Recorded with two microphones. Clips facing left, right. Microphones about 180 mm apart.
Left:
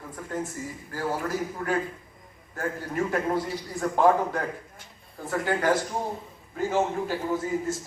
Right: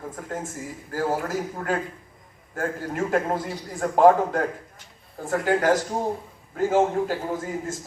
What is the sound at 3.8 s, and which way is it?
A man's voice, 45° right (ahead or behind).